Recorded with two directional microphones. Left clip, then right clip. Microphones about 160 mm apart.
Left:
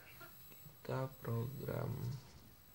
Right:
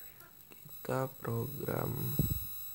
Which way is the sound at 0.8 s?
45° right (ahead or behind).